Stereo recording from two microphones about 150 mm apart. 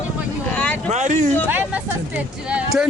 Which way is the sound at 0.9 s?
50° right (ahead or behind).